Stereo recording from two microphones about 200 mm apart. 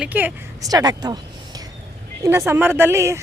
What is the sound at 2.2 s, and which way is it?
Speech, 15° right (ahead or behind).